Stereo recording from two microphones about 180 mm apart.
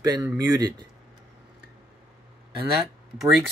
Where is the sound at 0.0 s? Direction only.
20° right (ahead or behind).